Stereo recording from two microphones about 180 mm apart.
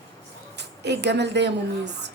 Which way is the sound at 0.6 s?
70° right (ahead or behind).